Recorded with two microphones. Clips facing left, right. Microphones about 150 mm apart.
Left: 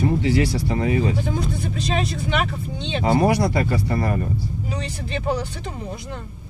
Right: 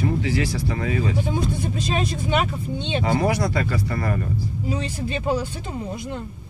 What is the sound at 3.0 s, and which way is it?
Speech, 30° left (ahead or behind).